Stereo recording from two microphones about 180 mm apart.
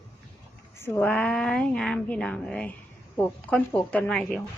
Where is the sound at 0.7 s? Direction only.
10° left (ahead or behind).